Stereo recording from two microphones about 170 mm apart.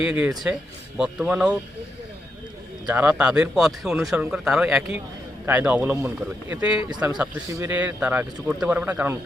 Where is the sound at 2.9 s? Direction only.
10° right (ahead or behind).